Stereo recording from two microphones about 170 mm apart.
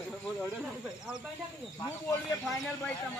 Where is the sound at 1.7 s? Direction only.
15° left (ahead or behind).